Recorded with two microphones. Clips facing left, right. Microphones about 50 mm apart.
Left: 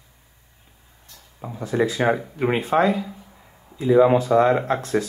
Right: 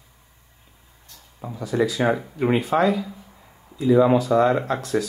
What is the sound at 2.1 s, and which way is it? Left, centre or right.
Speech, centre.